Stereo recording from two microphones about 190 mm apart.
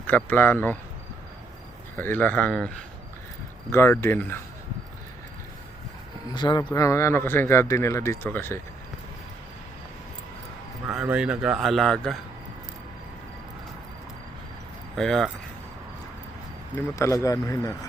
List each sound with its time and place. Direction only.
0.1 s speech: 10° left (ahead or behind)
2.0 s speech: 10° left (ahead or behind)
6.3 s speech: 25° left (ahead or behind)
10.8 s a man's voice: 5° right (ahead or behind)
14.9 s a man's voice: centre (ahead or behind)
16.7 s speech: 15° left (ahead or behind)